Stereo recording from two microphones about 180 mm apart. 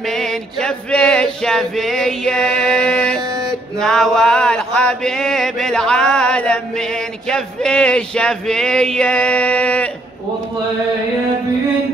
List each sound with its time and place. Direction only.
0.0 s mantra: centre (ahead or behind)
3.2 s a sound: 20° right (ahead or behind)
3.8 s mantra: 5° left (ahead or behind)